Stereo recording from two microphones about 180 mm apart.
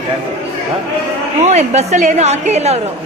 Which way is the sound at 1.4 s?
40° right (ahead or behind).